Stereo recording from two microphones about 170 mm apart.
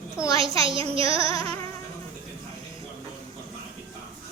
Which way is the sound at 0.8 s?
35° right (ahead or behind).